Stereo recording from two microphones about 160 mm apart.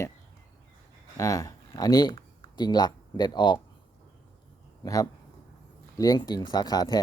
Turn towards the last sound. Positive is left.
turn(degrees=25)  # may be behind; listen again after turning